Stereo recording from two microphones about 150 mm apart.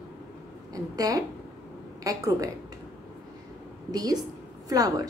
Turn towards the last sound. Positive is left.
turn(degrees=-25)  # may be behind; listen again after turning